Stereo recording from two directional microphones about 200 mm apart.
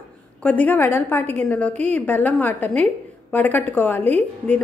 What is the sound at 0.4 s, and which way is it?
A woman's voice, 5° left (ahead or behind).